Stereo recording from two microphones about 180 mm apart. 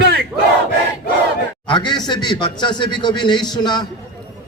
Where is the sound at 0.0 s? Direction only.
60° right (ahead or behind).